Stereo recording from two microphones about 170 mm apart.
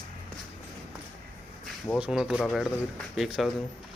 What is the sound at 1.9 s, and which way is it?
Speech, centre (ahead or behind).